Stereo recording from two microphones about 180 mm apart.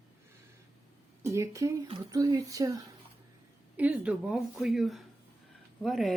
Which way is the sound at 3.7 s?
10° right (ahead or behind).